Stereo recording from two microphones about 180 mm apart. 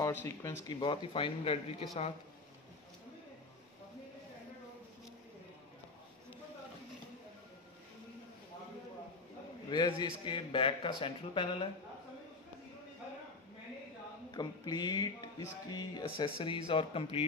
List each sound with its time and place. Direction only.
0.0 s speech: 15° left (ahead or behind)
0.7 s speech: 25° left (ahead or behind)
9.7 s speech: 25° left (ahead or behind)
14.3 s speech: 25° left (ahead or behind)